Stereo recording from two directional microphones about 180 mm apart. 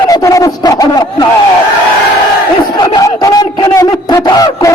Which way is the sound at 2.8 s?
20° left (ahead or behind).